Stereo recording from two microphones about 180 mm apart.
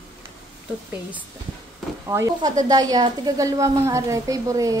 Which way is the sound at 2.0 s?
15° right (ahead or behind).